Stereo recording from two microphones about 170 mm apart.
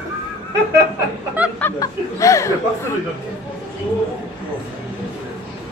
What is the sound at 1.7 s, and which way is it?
Speech, 20° left (ahead or behind).